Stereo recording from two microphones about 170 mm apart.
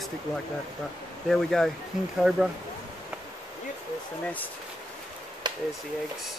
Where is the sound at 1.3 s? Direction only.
Centre (ahead or behind).